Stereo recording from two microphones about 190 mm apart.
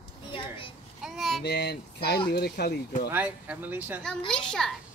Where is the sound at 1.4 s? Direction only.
60° left (ahead or behind).